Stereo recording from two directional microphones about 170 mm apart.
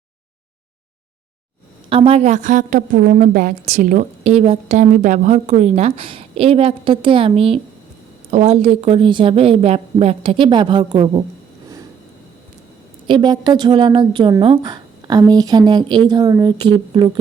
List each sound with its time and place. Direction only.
1.9 s a woman's voice: 35° right (ahead or behind)
13.1 s a woman's voice: 25° right (ahead or behind)